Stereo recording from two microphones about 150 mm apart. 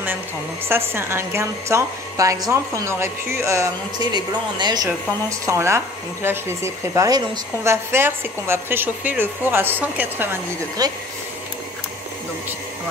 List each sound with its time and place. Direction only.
0.7 s a woman's voice: 15° right (ahead or behind)
10.8 s a woman's voice: 25° right (ahead or behind)